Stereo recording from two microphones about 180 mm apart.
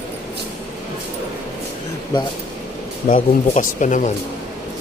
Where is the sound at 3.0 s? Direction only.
45° left (ahead or behind).